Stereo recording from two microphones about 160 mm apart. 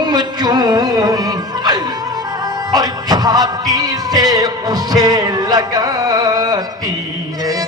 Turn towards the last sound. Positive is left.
turn(degrees=-25)  # may be behind; listen again after turning